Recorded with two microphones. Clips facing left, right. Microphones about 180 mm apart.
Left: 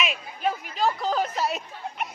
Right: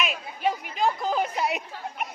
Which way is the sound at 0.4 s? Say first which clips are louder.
Even; 15° right (ahead or behind).